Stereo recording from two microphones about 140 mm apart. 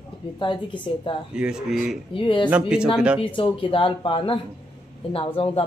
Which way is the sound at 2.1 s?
35° left (ahead or behind).